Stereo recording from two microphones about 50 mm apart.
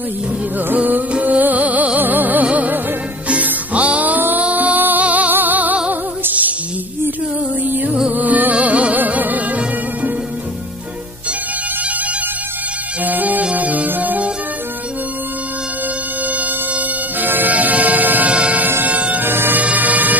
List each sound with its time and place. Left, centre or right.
0.7 s music: right
7.6 s music: right
13.0 s music: right
16.3 s music: right
19.2 s bagpipes: right
19.6 s vehicle: right